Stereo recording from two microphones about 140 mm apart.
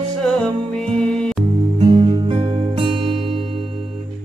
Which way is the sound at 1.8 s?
40° right (ahead or behind).